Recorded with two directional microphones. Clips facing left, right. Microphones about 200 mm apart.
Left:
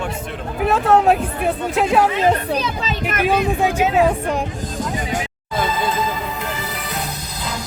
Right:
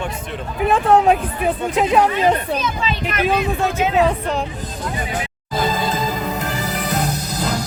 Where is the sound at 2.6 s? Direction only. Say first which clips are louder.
Even; 35° left (ahead or behind).